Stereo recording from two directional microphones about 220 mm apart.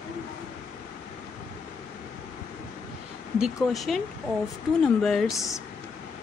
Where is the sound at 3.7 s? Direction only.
Centre (ahead or behind).